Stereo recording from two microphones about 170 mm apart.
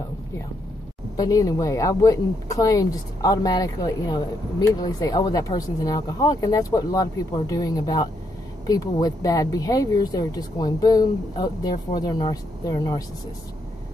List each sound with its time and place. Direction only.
1.1 s speech: 20° left (ahead or behind)